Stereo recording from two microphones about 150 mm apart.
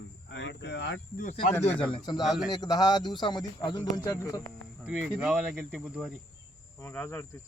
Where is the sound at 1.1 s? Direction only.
65° left (ahead or behind).